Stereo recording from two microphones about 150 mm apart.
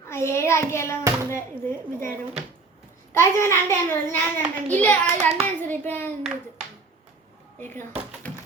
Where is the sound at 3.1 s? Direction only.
15° left (ahead or behind).